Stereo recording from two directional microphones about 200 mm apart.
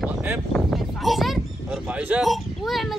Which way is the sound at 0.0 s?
5° right (ahead or behind).